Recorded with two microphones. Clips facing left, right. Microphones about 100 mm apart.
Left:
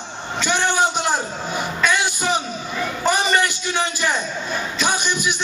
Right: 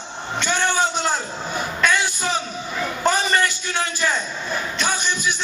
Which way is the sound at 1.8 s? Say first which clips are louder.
Left 1 dB; 15° left (ahead or behind).